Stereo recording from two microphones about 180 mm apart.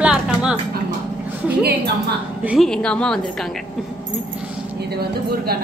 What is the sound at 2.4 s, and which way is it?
Speech, 5° right (ahead or behind).